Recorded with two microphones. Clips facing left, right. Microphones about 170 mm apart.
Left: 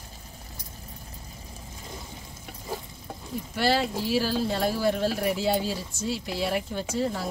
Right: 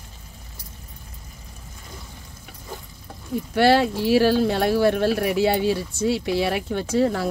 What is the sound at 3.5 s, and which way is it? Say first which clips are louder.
Speech: right 7 dB; 65° right (ahead or behind).